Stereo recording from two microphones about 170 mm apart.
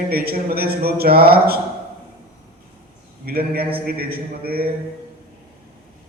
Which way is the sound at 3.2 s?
65° right (ahead or behind).